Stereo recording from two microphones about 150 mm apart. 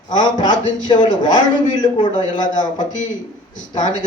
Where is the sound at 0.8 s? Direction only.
30° left (ahead or behind).